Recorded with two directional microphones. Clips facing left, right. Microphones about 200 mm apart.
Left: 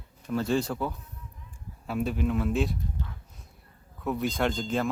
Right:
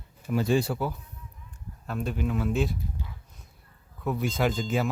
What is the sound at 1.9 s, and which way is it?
Speech, 5° left (ahead or behind).